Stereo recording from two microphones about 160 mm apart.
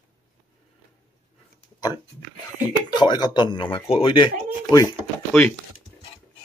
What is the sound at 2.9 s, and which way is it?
Speech, 25° left (ahead or behind).